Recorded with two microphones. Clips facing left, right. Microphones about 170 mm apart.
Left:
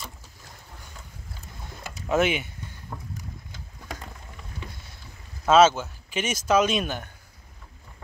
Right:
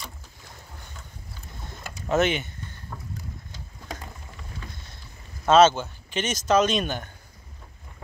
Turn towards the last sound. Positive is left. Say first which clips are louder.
# right 1 dB
turn(degrees=5)  # may be behind; listen again after turning